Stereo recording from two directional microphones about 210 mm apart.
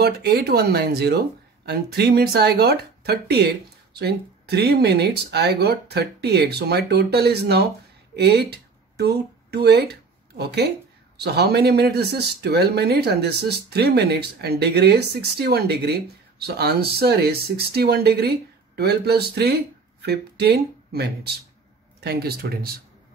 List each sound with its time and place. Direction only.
0.0 s speech: 50° right (ahead or behind)